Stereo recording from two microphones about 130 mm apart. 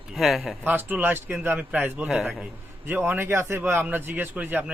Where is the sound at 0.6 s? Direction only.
15° right (ahead or behind).